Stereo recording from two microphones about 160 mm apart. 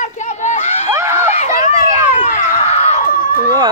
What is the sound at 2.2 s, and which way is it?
Screaming, 50° left (ahead or behind).